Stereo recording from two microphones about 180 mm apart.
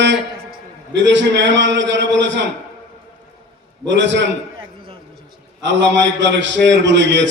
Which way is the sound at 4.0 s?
80° right.